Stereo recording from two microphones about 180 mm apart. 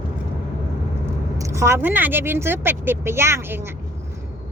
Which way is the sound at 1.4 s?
15° right (ahead or behind).